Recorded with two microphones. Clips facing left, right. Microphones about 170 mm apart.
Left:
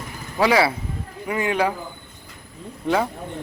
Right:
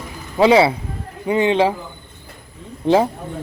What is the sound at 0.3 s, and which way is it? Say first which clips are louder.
A man's voice: right 6 dB; 25° right (ahead or behind).